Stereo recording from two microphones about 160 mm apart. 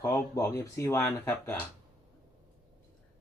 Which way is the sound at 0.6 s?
15° left (ahead or behind).